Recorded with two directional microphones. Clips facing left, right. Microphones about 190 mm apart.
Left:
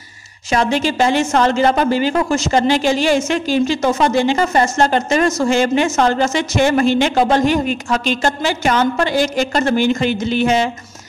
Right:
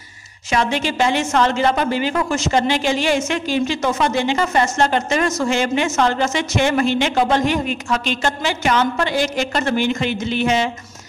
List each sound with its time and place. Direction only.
0.5 s a woman's voice: 40° left (ahead or behind)